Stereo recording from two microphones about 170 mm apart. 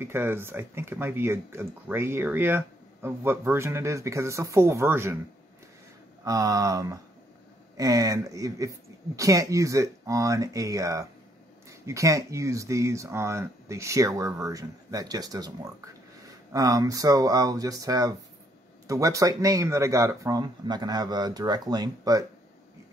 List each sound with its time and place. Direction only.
0.0 s speech: 15° right (ahead or behind)
6.2 s speech: 20° right (ahead or behind)